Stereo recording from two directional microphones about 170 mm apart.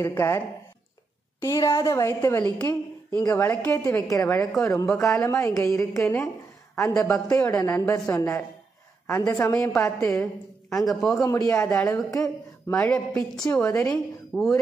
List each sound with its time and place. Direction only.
0.0 s a woman's voice: 15° left (ahead or behind)
1.4 s a woman's voice: 20° left (ahead or behind)
10.7 s a man's voice: centre (ahead or behind)
11.2 s a woman's voice: 20° left (ahead or behind)
13.7 s a woman's voice: 20° left (ahead or behind)
14.3 s a man's voice: centre (ahead or behind)